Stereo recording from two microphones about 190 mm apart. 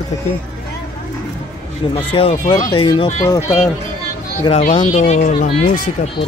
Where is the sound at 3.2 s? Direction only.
15° left (ahead or behind).